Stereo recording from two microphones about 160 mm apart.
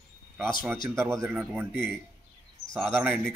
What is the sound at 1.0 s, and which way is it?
Speech, 15° right (ahead or behind).